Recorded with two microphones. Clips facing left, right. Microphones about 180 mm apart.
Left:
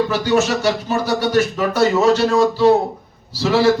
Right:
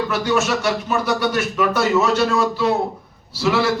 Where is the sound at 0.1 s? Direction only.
35° left (ahead or behind).